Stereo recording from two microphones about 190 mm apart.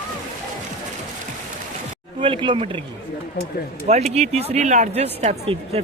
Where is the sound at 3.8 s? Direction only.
35° right (ahead or behind).